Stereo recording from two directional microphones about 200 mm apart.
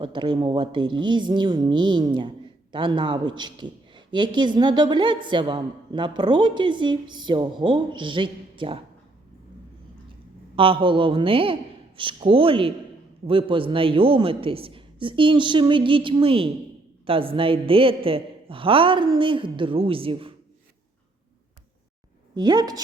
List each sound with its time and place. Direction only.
0.0 s a woman's voice: 25° right (ahead or behind)
10.5 s a woman's voice: 25° right (ahead or behind)
22.4 s a woman's voice: 20° right (ahead or behind)